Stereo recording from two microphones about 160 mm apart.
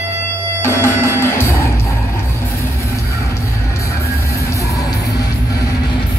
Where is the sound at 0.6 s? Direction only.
15° left (ahead or behind).